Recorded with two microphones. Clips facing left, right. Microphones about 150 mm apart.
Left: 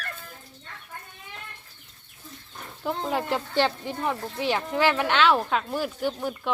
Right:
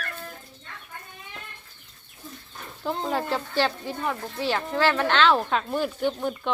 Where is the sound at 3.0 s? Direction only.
15° left (ahead or behind).